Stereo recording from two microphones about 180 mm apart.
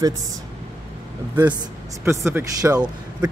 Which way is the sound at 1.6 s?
15° right (ahead or behind).